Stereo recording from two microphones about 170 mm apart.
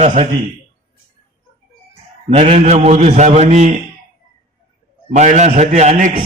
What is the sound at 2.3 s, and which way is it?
A man's voice, 40° right (ahead or behind).